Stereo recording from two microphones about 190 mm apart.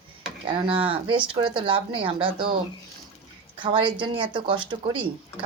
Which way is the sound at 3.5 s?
25° right (ahead or behind).